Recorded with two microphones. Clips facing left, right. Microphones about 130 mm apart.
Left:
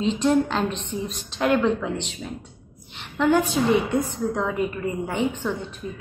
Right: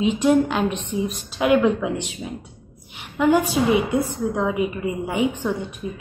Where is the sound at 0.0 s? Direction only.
10° right (ahead or behind).